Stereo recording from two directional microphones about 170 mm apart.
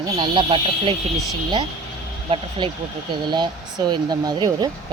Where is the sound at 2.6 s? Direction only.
25° right (ahead or behind).